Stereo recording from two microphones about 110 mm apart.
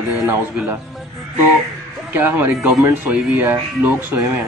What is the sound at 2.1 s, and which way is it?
Speech, 20° right (ahead or behind).